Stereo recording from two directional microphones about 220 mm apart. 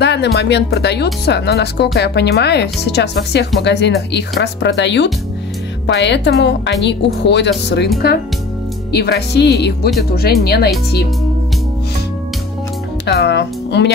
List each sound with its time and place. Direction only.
0.0 s speech: 50° left (ahead or behind)
8.9 s speech: 50° left (ahead or behind)
13.0 s speech: 50° left (ahead or behind)